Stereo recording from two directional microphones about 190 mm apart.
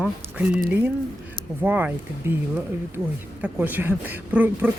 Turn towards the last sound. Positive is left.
turn(degrees=-10)  # may be behind; listen again after turning